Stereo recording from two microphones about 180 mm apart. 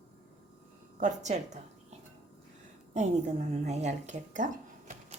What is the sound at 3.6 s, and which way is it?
Speech, 40° right (ahead or behind).